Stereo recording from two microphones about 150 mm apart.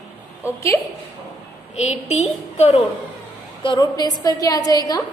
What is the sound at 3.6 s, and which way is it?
A woman's voice, 30° left (ahead or behind).